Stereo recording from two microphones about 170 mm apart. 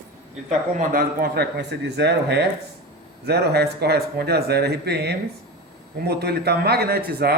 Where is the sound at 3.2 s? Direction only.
75° right (ahead or behind).